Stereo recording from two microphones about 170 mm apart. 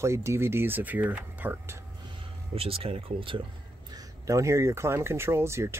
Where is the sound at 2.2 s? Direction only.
35° right (ahead or behind).